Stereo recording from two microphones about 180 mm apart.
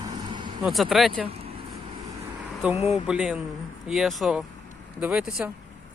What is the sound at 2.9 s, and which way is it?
Speech, 5° right (ahead or behind).